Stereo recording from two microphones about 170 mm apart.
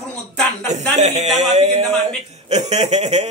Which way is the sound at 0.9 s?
40° right (ahead or behind).